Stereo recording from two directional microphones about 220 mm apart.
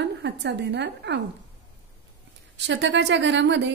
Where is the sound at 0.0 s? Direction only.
50° right (ahead or behind).